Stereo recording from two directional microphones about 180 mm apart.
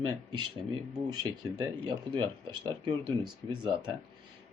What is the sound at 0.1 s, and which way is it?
Speech, 25° right (ahead or behind).